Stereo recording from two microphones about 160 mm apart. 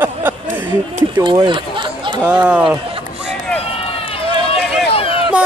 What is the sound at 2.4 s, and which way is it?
Speech, 5° right (ahead or behind).